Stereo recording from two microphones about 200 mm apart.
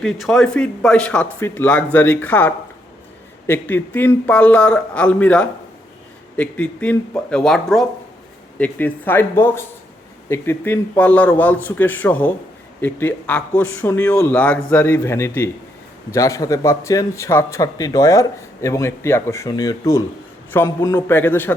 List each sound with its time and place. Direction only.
0.0 s a man's voice: centre (ahead or behind)